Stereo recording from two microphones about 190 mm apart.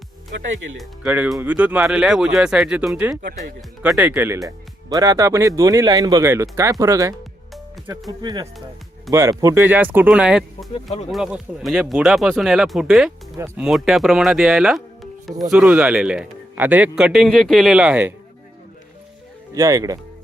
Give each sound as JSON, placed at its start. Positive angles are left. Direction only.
{"t": 0.8, "sound": "a man's voice", "side_deg": -10}
{"t": 8.2, "sound": "a man's voice", "side_deg": -25}
{"t": 19.5, "sound": "speech", "side_deg": -15}